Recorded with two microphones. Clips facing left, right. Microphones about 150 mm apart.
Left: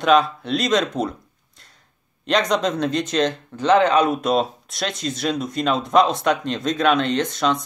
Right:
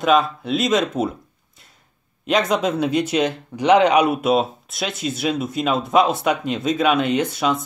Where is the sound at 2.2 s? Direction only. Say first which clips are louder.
Right 1 dB; 5° right (ahead or behind).